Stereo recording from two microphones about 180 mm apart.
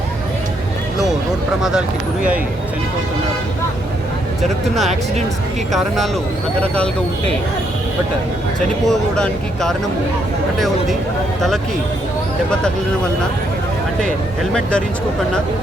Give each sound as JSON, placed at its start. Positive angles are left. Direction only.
{"t": 4.4, "sound": "speech", "side_deg": 0}
{"t": 8.9, "sound": "speech", "side_deg": 5}
{"t": 14.5, "sound": "speech", "side_deg": 5}